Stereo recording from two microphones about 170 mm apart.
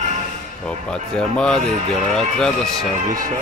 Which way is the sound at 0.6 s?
5° left (ahead or behind).